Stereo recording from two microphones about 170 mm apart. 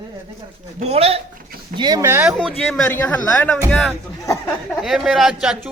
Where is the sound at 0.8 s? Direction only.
35° right (ahead or behind).